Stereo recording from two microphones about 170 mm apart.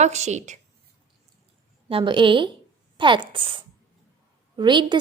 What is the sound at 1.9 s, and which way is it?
A woman's voice, 30° right (ahead or behind).